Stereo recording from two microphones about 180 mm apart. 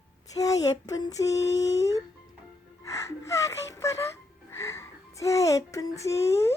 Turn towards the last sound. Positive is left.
turn(degrees=15)  # may be behind; listen again after turning